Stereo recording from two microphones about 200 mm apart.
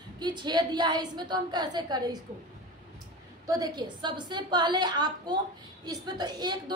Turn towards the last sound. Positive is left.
turn(degrees=-20)  # may be behind; listen again after turning